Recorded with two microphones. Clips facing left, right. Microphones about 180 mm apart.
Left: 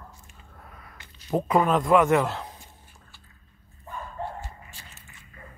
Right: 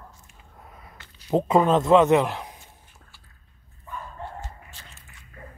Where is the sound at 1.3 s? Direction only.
25° right (ahead or behind).